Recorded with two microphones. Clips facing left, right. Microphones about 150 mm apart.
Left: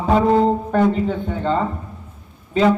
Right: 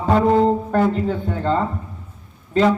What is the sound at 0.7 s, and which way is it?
Speech, 5° right (ahead or behind).